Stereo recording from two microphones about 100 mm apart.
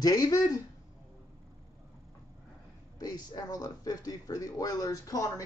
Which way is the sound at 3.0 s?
40° left (ahead or behind).